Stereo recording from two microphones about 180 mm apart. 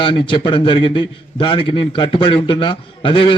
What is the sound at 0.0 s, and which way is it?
A man's voice, 25° left (ahead or behind).